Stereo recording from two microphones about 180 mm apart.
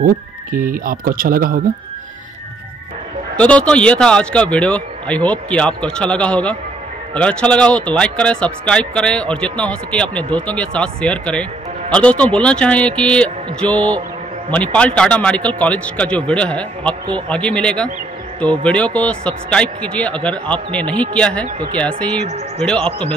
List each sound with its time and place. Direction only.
0.0 s speech: 50° right (ahead or behind)
3.3 s a man's voice: 5° left (ahead or behind)